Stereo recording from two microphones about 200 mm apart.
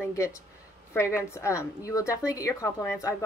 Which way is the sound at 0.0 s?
15° left (ahead or behind).